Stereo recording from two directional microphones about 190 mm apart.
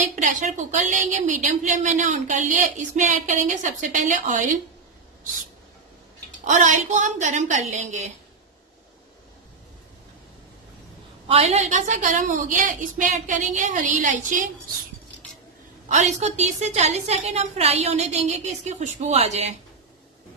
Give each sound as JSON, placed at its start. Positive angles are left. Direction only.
{"t": 0.0, "sound": "a woman's voice", "side_deg": -40}
{"t": 6.4, "sound": "a woman's voice", "side_deg": -40}
{"t": 11.2, "sound": "a woman's voice", "side_deg": -30}
{"t": 15.9, "sound": "a woman's voice", "side_deg": -35}